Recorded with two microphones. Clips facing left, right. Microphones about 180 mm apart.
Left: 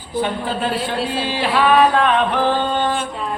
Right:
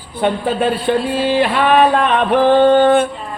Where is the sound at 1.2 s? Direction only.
55° right (ahead or behind).